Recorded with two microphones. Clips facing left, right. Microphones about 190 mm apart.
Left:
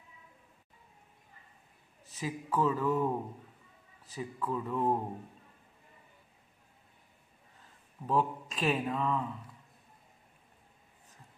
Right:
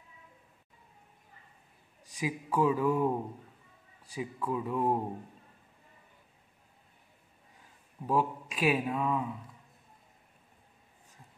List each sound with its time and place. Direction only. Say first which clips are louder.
2.0 s a man's voice: right 2 dB; 10° right (ahead or behind)
7.6 s speech: right 2 dB; 10° right (ahead or behind)